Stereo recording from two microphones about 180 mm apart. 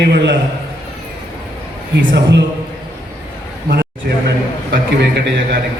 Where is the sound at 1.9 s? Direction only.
75° right (ahead or behind).